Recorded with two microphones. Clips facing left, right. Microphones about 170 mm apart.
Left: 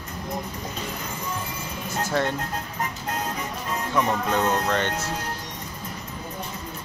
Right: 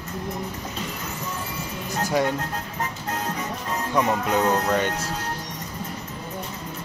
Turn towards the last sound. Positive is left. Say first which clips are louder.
# right 2 dB
turn(degrees=-10)  # may be behind; listen again after turning